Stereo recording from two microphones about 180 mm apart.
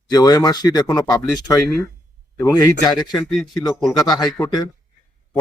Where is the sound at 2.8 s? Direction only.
20° left (ahead or behind).